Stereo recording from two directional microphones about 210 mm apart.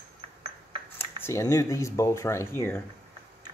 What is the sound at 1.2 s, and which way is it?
Speech, 15° left (ahead or behind).